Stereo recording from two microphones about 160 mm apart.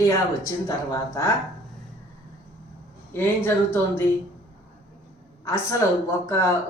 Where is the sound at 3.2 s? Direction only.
15° left (ahead or behind).